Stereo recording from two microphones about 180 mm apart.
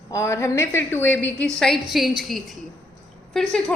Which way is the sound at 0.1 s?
15° left (ahead or behind).